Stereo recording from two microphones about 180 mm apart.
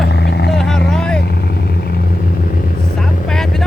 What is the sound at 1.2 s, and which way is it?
Vehicle, 60° left (ahead or behind).